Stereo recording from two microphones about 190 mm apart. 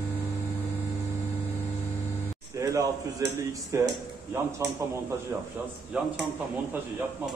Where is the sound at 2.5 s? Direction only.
20° right (ahead or behind).